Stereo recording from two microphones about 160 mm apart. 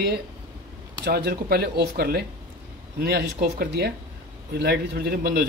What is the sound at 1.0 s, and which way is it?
Speech, 85° right.